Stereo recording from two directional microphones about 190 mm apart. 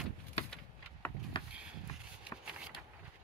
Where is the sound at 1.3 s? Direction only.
25° left (ahead or behind).